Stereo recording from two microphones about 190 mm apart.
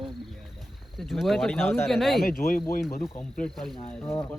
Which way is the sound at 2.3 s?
50° left (ahead or behind).